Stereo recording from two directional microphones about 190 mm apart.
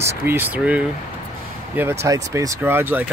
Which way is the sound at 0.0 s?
10° right (ahead or behind).